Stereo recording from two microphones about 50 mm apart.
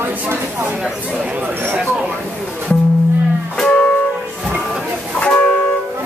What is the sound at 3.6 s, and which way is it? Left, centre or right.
Music, left.